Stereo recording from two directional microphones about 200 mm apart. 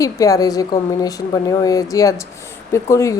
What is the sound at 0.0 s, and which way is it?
Speech, 15° left (ahead or behind).